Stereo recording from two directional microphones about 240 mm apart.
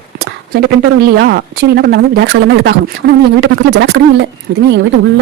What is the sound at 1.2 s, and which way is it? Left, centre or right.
Speech, right.